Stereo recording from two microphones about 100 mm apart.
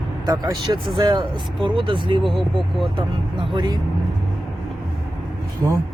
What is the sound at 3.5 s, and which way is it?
Speech, 45° right (ahead or behind).